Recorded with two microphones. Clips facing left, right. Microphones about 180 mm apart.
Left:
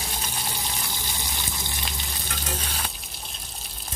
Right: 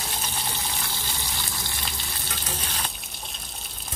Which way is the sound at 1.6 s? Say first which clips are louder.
Left 1 dB; 20° left (ahead or behind).